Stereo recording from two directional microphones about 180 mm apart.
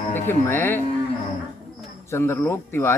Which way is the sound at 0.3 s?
10° left (ahead or behind).